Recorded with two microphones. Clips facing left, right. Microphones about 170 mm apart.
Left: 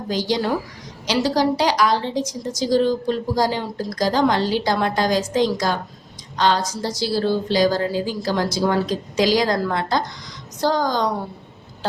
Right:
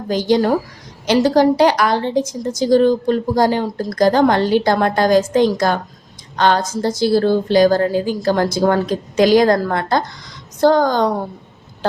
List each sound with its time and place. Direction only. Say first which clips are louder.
0.1 s a woman's voice: right 6 dB; 50° right (ahead or behind)